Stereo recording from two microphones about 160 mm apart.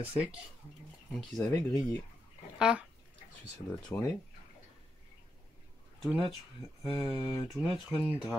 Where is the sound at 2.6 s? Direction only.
5° right (ahead or behind).